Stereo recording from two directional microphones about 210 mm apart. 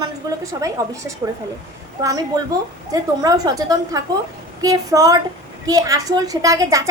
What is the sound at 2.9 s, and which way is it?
A woman's voice, 15° right (ahead or behind).